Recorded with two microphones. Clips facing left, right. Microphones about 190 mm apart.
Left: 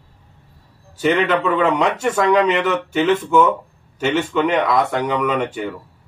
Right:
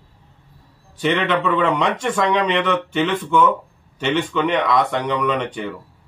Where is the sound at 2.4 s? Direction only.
5° left (ahead or behind).